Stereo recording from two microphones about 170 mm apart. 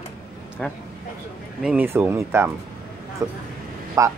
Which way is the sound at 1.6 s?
10° right (ahead or behind).